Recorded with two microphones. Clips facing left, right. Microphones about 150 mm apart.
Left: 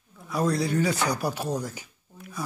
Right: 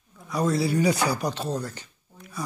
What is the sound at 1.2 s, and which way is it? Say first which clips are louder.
Speech: even; 10° left (ahead or behind).